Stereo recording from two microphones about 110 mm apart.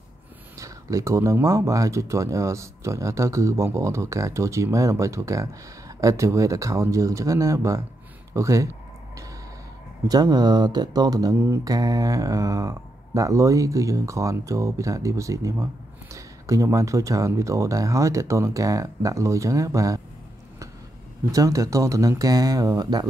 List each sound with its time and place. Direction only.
0.6 s speech: 30° right (ahead or behind)
10.0 s speech: 35° right (ahead or behind)
21.3 s speech: 30° right (ahead or behind)